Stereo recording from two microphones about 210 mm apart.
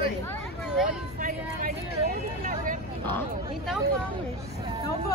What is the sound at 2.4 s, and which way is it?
Vehicle, 40° right (ahead or behind).